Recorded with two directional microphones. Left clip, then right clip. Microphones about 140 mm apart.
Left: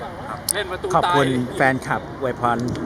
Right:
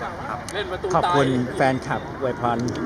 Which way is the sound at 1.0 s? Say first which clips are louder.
Left 2 dB; 35° left (ahead or behind).